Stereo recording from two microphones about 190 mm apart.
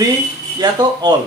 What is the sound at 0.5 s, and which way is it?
Speech, 20° right (ahead or behind).